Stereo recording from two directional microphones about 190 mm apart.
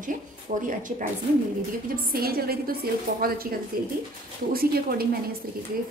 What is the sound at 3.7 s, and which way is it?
Speech, 50° right (ahead or behind).